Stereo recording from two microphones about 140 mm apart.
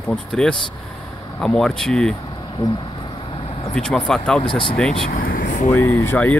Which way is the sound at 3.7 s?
5° left (ahead or behind).